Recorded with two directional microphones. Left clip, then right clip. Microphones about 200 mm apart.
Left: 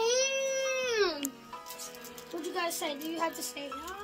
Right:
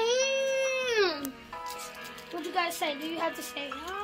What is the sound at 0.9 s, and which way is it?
Music, 5° right (ahead or behind).